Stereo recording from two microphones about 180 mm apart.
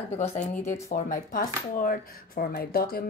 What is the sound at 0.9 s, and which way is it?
Speech, 55° left (ahead or behind).